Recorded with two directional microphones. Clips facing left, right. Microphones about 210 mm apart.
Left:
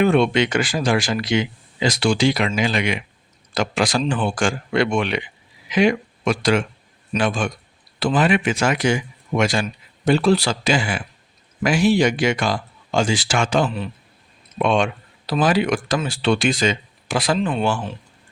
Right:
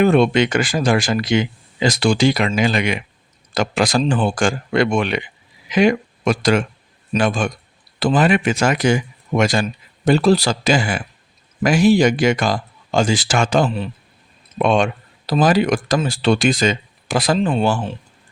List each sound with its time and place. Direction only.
0.0 s speech: 40° right (ahead or behind)
5.7 s a sound: 45° right (ahead or behind)
6.4 s speech: 45° right (ahead or behind)